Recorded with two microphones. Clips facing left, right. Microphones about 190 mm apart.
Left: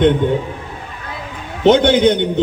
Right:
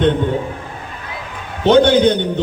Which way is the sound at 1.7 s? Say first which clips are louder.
Even; 20° left (ahead or behind).